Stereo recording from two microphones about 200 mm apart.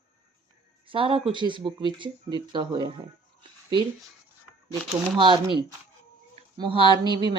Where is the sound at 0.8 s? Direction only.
25° right (ahead or behind).